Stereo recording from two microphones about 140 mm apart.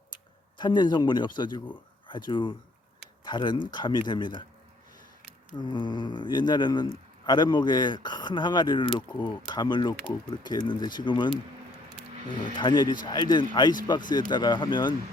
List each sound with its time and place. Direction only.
0.6 s speech: 30° left (ahead or behind)
5.5 s speech: 35° left (ahead or behind)